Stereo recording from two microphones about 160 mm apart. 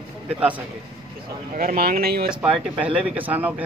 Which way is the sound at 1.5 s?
65° right (ahead or behind).